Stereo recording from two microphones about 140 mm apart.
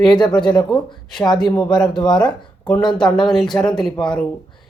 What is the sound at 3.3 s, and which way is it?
Speech, 5° left (ahead or behind).